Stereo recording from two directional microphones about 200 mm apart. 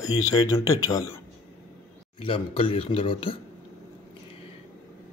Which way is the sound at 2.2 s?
25° left (ahead or behind).